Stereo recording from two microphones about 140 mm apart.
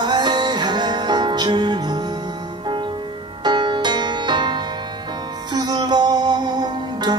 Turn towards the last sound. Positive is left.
turn(degrees=-30)  # may be behind; listen again after turning